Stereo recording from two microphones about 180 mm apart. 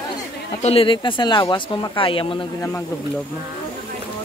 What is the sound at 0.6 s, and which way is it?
Speech, 35° left (ahead or behind).